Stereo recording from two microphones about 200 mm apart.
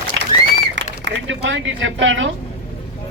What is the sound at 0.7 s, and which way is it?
Speech, 65° right (ahead or behind).